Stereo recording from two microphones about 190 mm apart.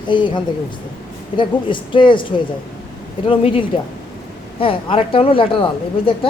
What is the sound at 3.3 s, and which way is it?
Speech, 30° left (ahead or behind).